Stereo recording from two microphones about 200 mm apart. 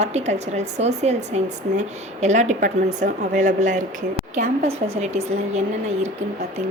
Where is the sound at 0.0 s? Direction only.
35° right (ahead or behind).